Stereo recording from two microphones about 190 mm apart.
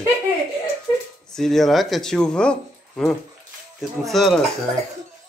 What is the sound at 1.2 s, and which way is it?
Speech, 5° left (ahead or behind).